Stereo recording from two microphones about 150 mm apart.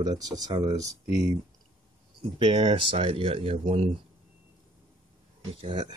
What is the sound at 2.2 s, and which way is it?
Speech, 35° right (ahead or behind).